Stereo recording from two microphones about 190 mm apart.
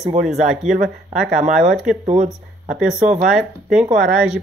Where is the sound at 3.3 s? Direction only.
5° right (ahead or behind).